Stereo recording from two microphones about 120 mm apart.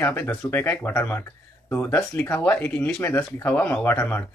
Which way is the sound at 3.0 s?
20° left (ahead or behind).